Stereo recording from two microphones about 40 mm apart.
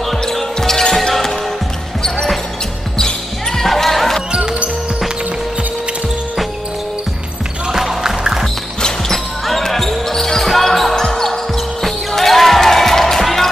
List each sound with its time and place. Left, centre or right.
0.3 s basketball bounce: centre
3.5 s basketball bounce: centre
4.3 s music: right
7.7 s music: centre
8.8 s basketball bounce: centre
11.8 s music: centre